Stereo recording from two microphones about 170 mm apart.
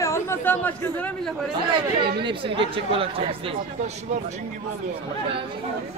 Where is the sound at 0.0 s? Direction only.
15° left (ahead or behind).